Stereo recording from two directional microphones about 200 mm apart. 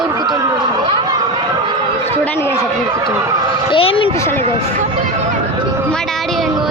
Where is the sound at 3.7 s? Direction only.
25° left (ahead or behind).